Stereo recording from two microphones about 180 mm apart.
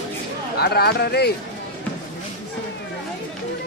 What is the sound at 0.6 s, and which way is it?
Speech, 60° left (ahead or behind).